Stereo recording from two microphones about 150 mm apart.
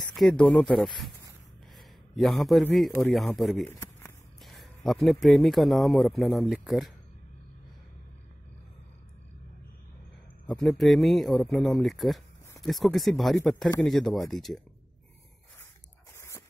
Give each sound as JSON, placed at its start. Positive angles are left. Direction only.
{"t": 0.0, "sound": "speech", "side_deg": 5}
{"t": 1.8, "sound": "a sound", "side_deg": 0}
{"t": 3.0, "sound": "speech", "side_deg": 0}
{"t": 3.6, "sound": "a sound", "side_deg": 20}
{"t": 4.4, "sound": "speech", "side_deg": 0}
{"t": 10.5, "sound": "speech", "side_deg": 0}
{"t": 16.1, "sound": "dog", "side_deg": 15}